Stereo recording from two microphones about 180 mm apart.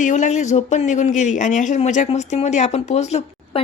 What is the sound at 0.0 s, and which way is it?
A woman's voice, 40° left (ahead or behind).